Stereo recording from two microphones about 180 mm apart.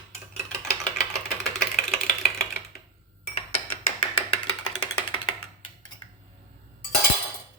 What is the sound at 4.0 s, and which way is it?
Music, 30° left (ahead or behind).